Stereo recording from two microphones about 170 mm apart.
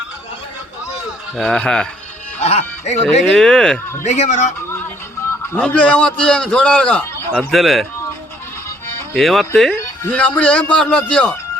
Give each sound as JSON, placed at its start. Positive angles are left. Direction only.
{"t": 0.9, "sound": "a sound", "side_deg": 5}
{"t": 2.4, "sound": "speech", "side_deg": 40}
{"t": 3.3, "sound": "a man's voice", "side_deg": 5}
{"t": 4.0, "sound": "a man's voice", "side_deg": 45}
{"t": 5.5, "sound": "a man's voice", "side_deg": 5}
{"t": 9.1, "sound": "a man's voice", "side_deg": 0}